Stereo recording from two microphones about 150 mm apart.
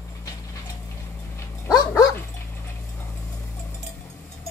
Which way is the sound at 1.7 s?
20° left (ahead or behind).